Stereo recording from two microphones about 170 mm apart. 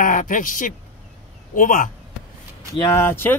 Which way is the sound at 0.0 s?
50° left (ahead or behind).